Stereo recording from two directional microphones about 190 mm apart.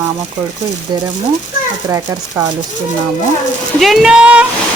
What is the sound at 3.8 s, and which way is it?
Speech, centre (ahead or behind).